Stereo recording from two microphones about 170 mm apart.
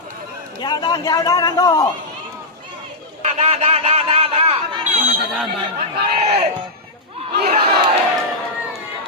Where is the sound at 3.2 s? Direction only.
40° right (ahead or behind).